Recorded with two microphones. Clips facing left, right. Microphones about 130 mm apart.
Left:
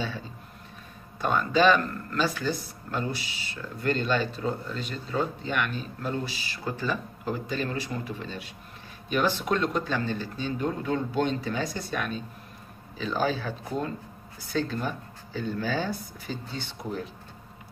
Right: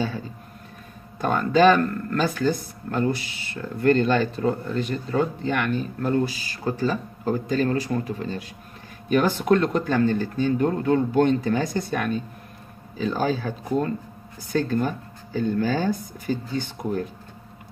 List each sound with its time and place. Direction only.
1.2 s speech: 50° right (ahead or behind)